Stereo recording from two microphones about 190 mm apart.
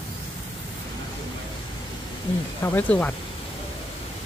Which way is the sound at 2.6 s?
10° left (ahead or behind).